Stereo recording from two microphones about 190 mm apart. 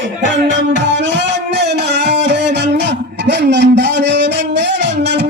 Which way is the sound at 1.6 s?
65° right (ahead or behind).